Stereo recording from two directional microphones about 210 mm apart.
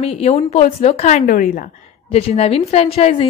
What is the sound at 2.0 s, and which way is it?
A woman's voice, 30° left (ahead or behind).